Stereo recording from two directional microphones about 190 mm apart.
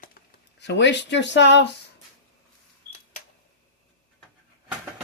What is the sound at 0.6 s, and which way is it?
Speech, 65° left (ahead or behind).